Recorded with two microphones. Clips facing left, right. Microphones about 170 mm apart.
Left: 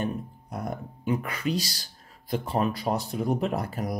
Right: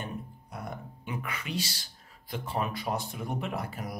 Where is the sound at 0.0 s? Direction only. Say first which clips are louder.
Left 8 dB; 40° left (ahead or behind).